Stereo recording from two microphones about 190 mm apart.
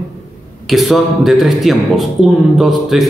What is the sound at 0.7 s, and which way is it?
A man's voice, centre (ahead or behind).